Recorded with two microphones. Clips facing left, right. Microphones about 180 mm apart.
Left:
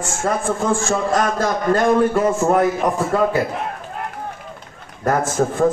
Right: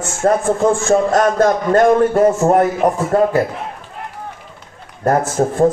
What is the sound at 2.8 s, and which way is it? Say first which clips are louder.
Speech: right 4 dB; 30° right (ahead or behind).